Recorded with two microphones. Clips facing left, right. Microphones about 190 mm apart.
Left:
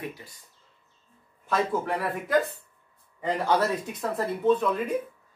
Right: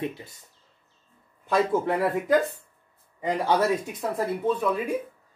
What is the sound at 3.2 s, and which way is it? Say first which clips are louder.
Speech: right 1 dB; 15° right (ahead or behind).